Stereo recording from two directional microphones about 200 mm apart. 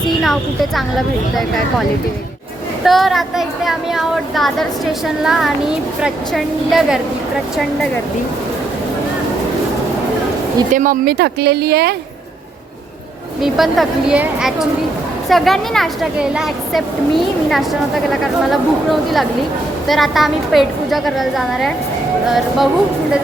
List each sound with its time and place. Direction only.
0.8 s a woman's voice: centre (ahead or behind)
2.8 s a woman's voice: centre (ahead or behind)
10.8 s speech: 45° right (ahead or behind)
13.4 s a woman's voice: centre (ahead or behind)